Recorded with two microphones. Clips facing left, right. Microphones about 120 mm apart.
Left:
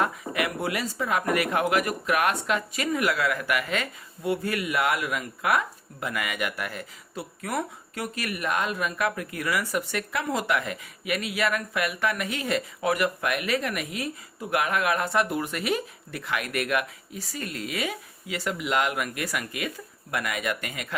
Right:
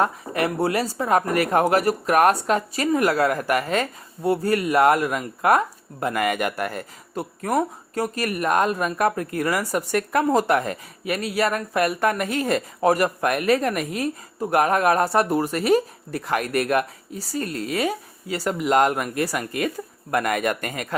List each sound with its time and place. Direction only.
0.0 s speech: 35° right (ahead or behind)